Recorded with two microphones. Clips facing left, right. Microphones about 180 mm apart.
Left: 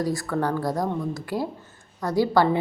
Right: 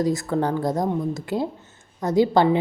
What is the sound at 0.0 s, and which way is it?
A woman's voice, 20° right (ahead or behind).